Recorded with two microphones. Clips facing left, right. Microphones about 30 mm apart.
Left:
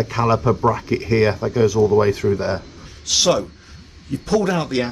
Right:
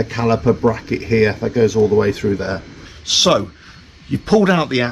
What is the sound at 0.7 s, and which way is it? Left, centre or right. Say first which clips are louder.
Speech: right 1 dB; right.